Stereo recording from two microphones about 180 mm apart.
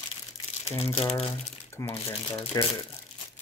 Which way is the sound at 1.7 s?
15° left (ahead or behind).